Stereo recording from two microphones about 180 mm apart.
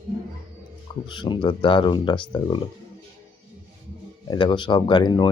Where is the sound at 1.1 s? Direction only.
25° left (ahead or behind).